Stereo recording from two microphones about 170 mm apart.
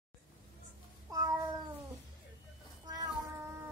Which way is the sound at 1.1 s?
20° right (ahead or behind).